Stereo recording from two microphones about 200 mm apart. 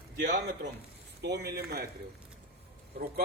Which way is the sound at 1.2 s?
55° right (ahead or behind).